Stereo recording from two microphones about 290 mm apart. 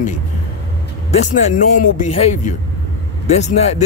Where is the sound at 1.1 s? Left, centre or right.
Left.